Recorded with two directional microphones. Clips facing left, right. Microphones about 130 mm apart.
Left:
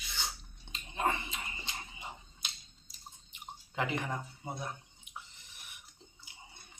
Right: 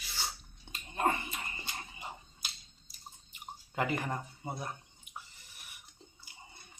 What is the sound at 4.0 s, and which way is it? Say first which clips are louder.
Speech: even; 5° right (ahead or behind).